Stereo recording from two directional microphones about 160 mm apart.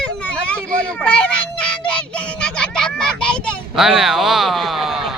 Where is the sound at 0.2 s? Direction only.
10° left (ahead or behind).